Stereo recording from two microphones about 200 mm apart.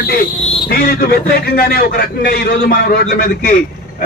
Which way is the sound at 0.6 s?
50° left (ahead or behind).